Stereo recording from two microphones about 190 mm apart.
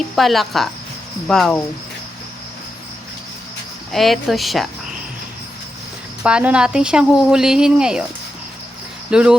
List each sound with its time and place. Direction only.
0.2 s speech: centre (ahead or behind)
3.9 s speech: centre (ahead or behind)
6.2 s speech: 5° right (ahead or behind)
9.0 s speech: 5° right (ahead or behind)